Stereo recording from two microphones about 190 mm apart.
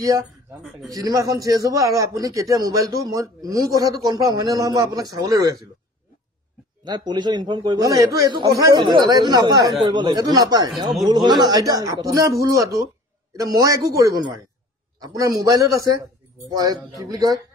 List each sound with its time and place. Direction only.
0.8 s a man's voice: 20° right (ahead or behind)
6.8 s a man's voice: 20° right (ahead or behind)